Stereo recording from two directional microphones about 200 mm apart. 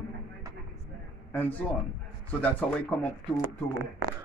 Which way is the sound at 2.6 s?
5° left (ahead or behind).